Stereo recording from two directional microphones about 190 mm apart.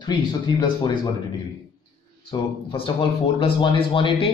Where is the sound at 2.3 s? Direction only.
25° left (ahead or behind).